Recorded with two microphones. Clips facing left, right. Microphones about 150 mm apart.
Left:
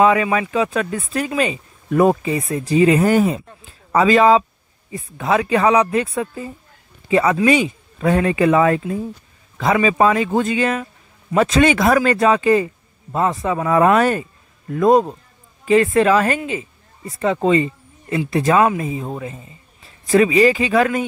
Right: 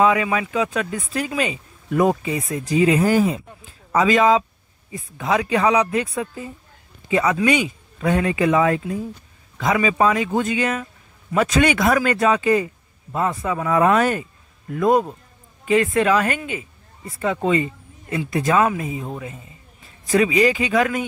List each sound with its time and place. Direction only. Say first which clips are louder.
0.0 s speech: left 3 dB; 45° left (ahead or behind)
2.8 s speech: left 3 dB; 55° left (ahead or behind)
4.0 s speech: left 3 dB; 40° left (ahead or behind)
5.1 s speech: left 3 dB; 55° left (ahead or behind)
7.1 s speech: left 3 dB; 35° left (ahead or behind)
8.0 s speech: left 3 dB; 45° left (ahead or behind)
9.6 s speech: left 3 dB; 35° left (ahead or behind)
11.4 s speech: left 3 dB; 25° left (ahead or behind)
13.6 s speech: left 3 dB; 45° left (ahead or behind)
14.7 s a man's voice: left 4 dB; 30° left (ahead or behind)
18.8 s speech: left 3 dB; 40° left (ahead or behind)